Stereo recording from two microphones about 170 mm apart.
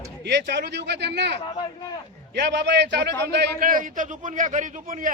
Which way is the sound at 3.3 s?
75° right (ahead or behind).